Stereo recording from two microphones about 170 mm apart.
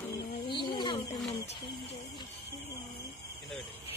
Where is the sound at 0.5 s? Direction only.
25° left (ahead or behind).